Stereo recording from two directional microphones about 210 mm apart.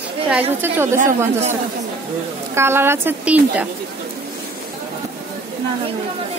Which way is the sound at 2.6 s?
10° right (ahead or behind).